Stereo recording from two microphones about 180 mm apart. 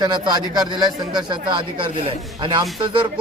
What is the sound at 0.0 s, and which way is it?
A man's voice, 25° right (ahead or behind).